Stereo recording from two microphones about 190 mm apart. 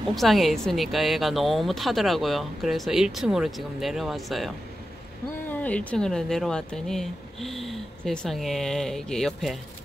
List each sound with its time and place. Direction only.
0.1 s speech: centre (ahead or behind)
5.5 s speech: 5° left (ahead or behind)